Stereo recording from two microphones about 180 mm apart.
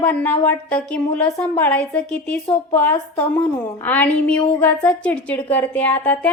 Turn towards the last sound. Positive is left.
turn(degrees=10)  # may be behind; listen again after turning